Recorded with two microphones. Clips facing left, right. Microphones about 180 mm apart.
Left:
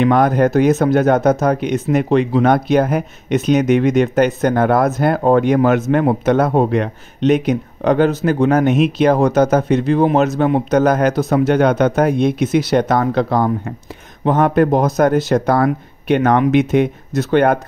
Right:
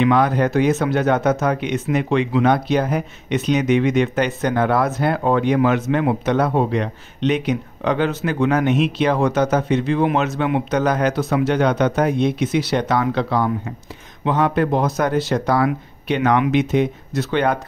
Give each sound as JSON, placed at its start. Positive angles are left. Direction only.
{"t": 0.0, "sound": "speech", "side_deg": 45}